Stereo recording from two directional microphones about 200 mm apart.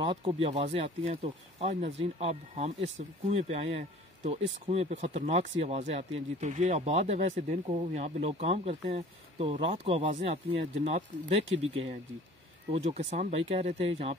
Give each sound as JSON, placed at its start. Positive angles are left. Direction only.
{"t": 0.0, "sound": "speech", "side_deg": -25}